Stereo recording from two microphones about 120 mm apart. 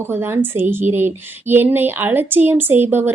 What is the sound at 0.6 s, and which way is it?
A woman's voice, 20° right (ahead or behind).